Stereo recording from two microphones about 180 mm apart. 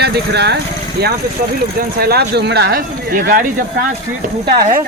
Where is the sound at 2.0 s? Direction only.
60° right (ahead or behind).